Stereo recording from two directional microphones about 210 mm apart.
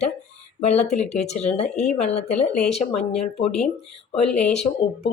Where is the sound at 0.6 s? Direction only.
30° left (ahead or behind).